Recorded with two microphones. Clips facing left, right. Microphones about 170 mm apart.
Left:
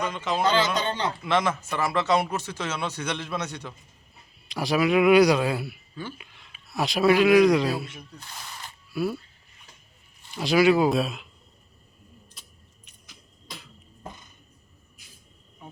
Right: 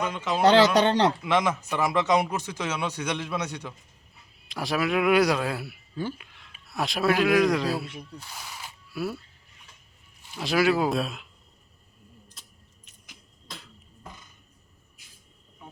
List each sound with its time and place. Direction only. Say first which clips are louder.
0.0 s a man's voice: even; 5° right (ahead or behind)
0.4 s speech: right 7 dB; 75° right (ahead or behind)
1.2 s speech: even; 15° right (ahead or behind)
4.4 s a man's voice: left 4 dB; centre (ahead or behind)
10.2 s a man's voice: left 3 dB; centre (ahead or behind)